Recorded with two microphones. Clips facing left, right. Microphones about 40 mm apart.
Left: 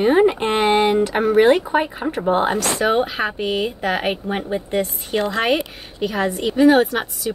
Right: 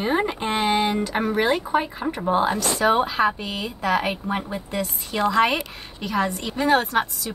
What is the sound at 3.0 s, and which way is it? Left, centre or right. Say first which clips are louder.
Speech: even; left.